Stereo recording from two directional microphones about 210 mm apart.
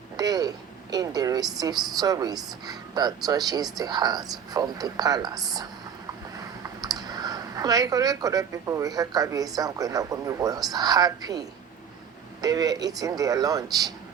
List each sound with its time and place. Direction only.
0.2 s speech: 20° right (ahead or behind)